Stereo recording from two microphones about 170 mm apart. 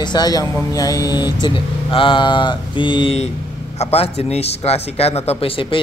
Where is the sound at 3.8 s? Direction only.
40° left (ahead or behind).